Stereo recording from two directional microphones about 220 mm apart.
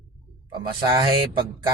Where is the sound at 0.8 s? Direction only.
20° right (ahead or behind).